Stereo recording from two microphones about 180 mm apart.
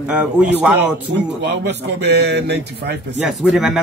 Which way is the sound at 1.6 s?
70° right (ahead or behind).